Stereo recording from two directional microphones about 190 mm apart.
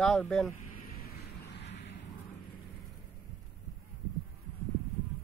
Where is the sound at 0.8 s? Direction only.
50° left (ahead or behind).